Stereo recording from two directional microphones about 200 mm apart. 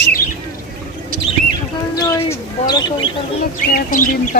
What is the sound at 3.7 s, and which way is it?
Speech, 45° left (ahead or behind).